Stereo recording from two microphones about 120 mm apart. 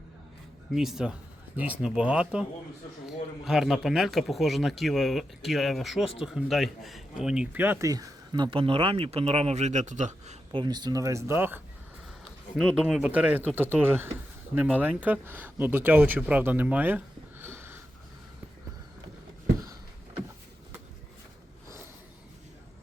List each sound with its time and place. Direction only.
0.7 s speech: 5° right (ahead or behind)
7.9 s speech: 30° right (ahead or behind); by 10.3 s 85° right
10.5 s speech: 35° right (ahead or behind); by 11.6 s 15° right (ahead or behind)
12.8 s speech: 10° right (ahead or behind)
17.4 s sniff: 20° right (ahead or behind)